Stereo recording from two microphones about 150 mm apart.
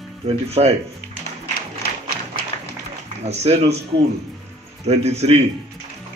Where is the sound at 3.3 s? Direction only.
45° right (ahead or behind).